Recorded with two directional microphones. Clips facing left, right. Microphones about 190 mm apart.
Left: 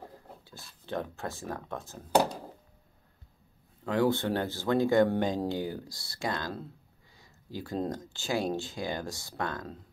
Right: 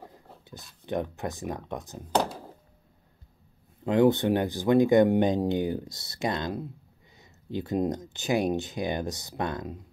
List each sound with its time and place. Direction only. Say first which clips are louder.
0.8 s speech: right 4 dB; 20° right (ahead or behind)
3.8 s speech: right 6 dB; 20° right (ahead or behind)